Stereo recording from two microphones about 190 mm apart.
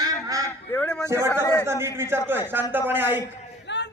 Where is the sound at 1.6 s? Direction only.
15° right (ahead or behind).